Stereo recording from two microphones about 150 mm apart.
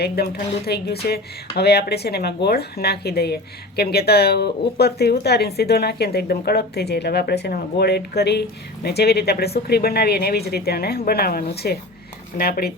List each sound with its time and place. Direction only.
0.0 s speech: 90° left